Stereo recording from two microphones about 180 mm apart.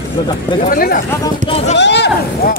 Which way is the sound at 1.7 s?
75° left (ahead or behind).